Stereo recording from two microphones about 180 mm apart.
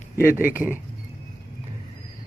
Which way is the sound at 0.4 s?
10° right (ahead or behind).